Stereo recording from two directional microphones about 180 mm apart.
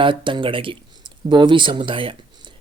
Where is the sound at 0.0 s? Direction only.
30° right (ahead or behind).